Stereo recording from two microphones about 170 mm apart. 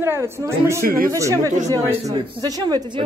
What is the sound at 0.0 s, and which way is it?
Speech, 15° right (ahead or behind).